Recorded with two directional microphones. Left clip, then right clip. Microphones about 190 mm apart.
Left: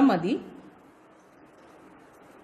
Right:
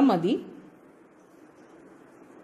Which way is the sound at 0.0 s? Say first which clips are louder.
Even; 20° right (ahead or behind).